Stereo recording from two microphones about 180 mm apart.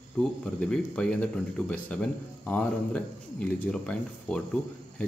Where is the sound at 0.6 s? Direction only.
5° left (ahead or behind).